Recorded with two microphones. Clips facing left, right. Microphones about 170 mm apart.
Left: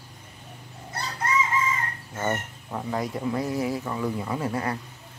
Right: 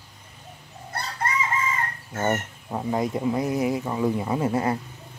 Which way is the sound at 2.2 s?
20° right (ahead or behind).